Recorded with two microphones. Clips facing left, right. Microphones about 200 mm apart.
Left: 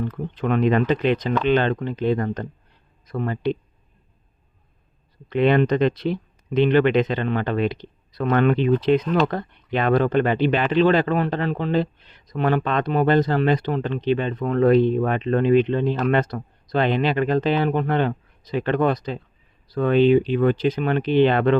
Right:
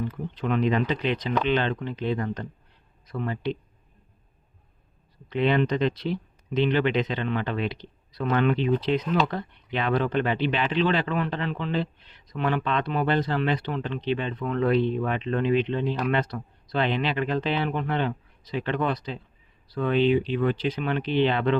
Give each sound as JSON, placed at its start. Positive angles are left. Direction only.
{"t": 0.3, "sound": "speech", "side_deg": 55}
{"t": 5.3, "sound": "speech", "side_deg": 55}